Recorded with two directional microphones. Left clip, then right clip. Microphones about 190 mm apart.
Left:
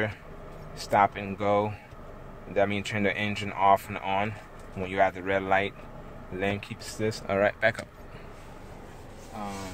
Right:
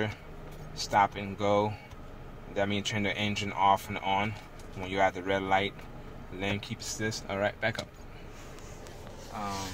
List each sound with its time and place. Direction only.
0.7 s speech: 50° left (ahead or behind)